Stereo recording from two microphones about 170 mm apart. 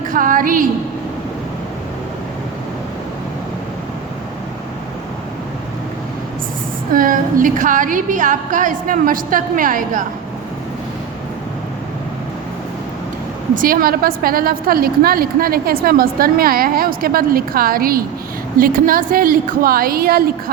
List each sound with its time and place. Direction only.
0.1 s a woman's voice: 55° right (ahead or behind)
6.9 s a woman's voice: 55° right (ahead or behind)
13.6 s a woman's voice: 55° right (ahead or behind)